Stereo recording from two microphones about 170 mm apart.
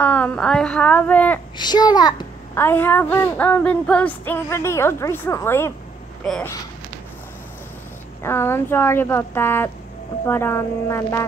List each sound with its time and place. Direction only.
0.0 s speech: 10° left (ahead or behind)
1.6 s a child's voice: 25° left (ahead or behind)
2.5 s speech: 10° left (ahead or behind)
6.2 s speech: 5° left (ahead or behind)
8.2 s speech: 15° left (ahead or behind)